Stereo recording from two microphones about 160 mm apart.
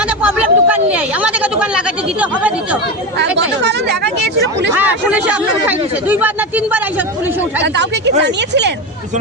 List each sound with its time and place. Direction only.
0.2 s speech: 10° right (ahead or behind)
3.2 s speech: 90° right
4.7 s speech: 10° right (ahead or behind)
7.6 s speech: 90° right